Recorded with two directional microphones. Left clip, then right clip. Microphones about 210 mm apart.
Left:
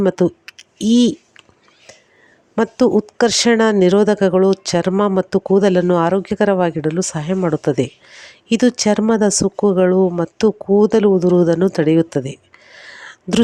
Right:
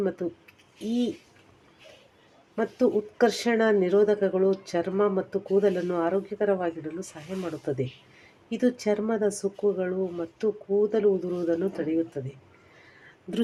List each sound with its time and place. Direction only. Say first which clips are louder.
0.0 s speech: left 13 dB; 45° left (ahead or behind)
2.6 s speech: left 10 dB; 45° left (ahead or behind)